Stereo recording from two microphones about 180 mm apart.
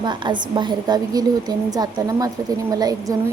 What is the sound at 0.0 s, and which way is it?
A woman's voice, 25° right (ahead or behind).